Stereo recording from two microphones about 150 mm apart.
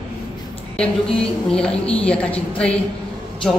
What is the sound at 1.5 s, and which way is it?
A woman's voice, 5° left (ahead or behind).